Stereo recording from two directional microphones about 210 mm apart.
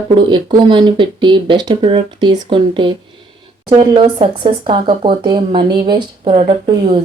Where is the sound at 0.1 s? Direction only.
20° right (ahead or behind).